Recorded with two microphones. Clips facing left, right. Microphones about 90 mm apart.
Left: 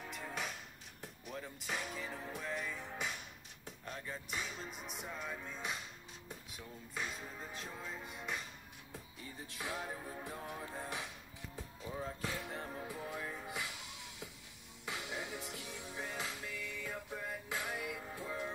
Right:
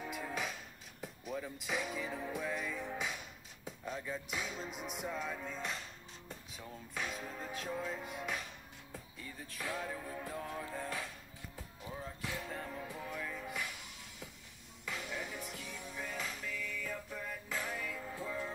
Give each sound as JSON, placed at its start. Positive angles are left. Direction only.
{"t": 0.0, "sound": "music", "side_deg": -5}
{"t": 9.5, "sound": "music", "side_deg": 20}
{"t": 12.5, "sound": "music", "side_deg": 30}